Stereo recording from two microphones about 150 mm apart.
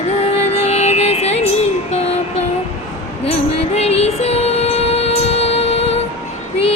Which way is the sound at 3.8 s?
45° left (ahead or behind).